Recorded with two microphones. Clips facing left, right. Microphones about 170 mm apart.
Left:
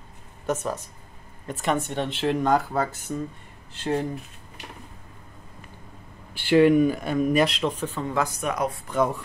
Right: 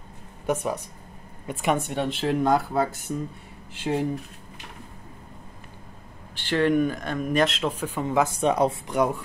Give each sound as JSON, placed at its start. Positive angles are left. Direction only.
{"t": 0.5, "sound": "speech", "side_deg": -10}
{"t": 6.3, "sound": "speech", "side_deg": 10}
{"t": 8.3, "sound": "speech", "side_deg": -30}
{"t": 8.8, "sound": "speech", "side_deg": -15}